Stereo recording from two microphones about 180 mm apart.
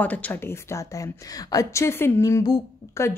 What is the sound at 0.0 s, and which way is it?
A woman's voice, 10° left (ahead or behind).